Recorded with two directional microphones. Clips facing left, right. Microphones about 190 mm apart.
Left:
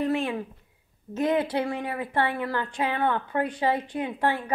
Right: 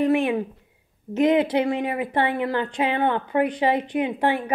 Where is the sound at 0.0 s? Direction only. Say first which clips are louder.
Right 6 dB; 15° right (ahead or behind).